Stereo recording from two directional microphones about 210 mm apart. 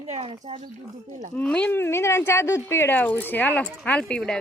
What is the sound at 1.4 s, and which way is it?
Speech, 5° left (ahead or behind).